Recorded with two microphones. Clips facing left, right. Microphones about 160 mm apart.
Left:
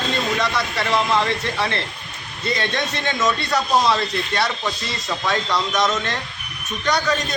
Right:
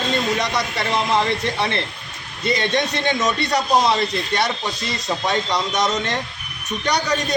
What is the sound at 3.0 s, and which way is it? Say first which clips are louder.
A man's voice: right 1 dB; 20° right (ahead or behind).